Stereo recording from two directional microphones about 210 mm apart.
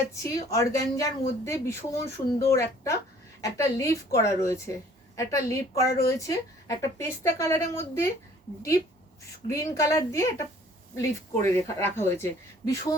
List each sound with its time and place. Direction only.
0.1 s speech: 15° left (ahead or behind)
9.5 s speech: 15° left (ahead or behind)